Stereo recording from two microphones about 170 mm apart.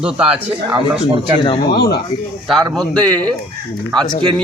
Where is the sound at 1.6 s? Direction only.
70° left (ahead or behind).